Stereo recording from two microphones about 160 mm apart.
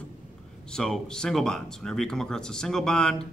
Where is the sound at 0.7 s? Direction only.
5° left (ahead or behind).